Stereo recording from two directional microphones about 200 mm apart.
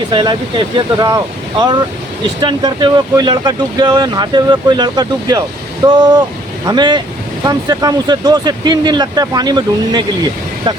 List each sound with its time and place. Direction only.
0.1 s speech: 25° right (ahead or behind)